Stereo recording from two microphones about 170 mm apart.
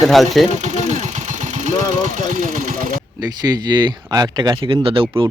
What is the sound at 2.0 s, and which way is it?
Vehicle, 50° right (ahead or behind).